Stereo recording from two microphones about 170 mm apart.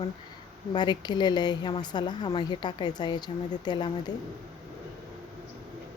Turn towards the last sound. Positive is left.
turn(degrees=25)  # may be behind; listen again after turning